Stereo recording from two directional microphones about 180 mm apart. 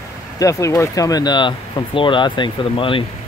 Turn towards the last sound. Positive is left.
turn(degrees=30)  # may be behind; listen again after turning